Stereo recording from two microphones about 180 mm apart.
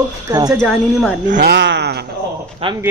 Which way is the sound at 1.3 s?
60° right (ahead or behind).